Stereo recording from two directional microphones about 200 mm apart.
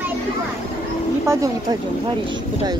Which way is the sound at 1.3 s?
15° right (ahead or behind).